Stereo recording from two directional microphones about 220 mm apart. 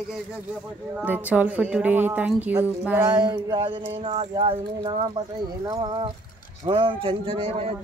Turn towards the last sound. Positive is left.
turn(degrees=-25)  # may be behind; listen again after turning